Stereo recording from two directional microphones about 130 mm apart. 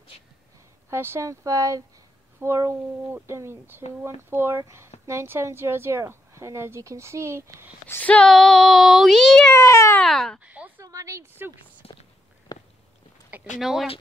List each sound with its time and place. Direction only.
0.8 s a woman's voice: 20° right (ahead or behind)
7.9 s speech: 10° left (ahead or behind)
9.5 s speech: 20° left (ahead or behind)
9.9 s speech: 5° left (ahead or behind)
10.4 s a sound: 10° right (ahead or behind)
10.8 s speech: 25° right (ahead or behind)
11.8 s whispering: 45° left (ahead or behind)
12.5 s a sound: 30° left (ahead or behind)
13.6 s speech: centre (ahead or behind)